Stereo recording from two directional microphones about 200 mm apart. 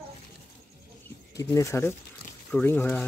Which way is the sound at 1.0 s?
15° left (ahead or behind).